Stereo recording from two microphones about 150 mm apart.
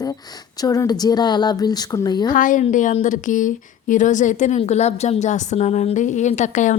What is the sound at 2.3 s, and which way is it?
A woman's voice, 60° left (ahead or behind).